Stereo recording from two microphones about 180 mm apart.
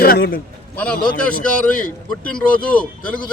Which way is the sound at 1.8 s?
5° left (ahead or behind).